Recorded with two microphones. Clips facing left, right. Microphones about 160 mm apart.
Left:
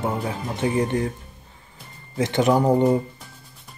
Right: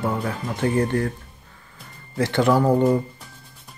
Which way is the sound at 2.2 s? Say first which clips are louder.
Even; 20° left (ahead or behind).